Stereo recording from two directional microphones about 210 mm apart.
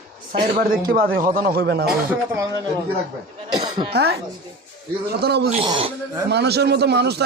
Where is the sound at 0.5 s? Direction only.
40° right (ahead or behind).